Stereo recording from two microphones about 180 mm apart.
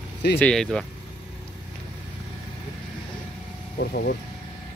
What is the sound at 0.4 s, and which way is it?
Speech, 5° left (ahead or behind).